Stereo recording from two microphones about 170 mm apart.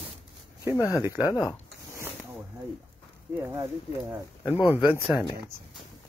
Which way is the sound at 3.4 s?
15° right (ahead or behind).